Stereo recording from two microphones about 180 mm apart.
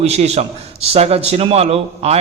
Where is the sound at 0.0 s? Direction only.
35° right (ahead or behind).